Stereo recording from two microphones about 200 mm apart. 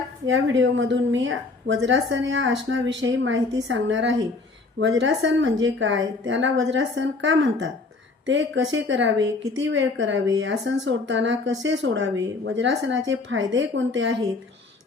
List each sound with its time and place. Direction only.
0.3 s speech: 65° right (ahead or behind)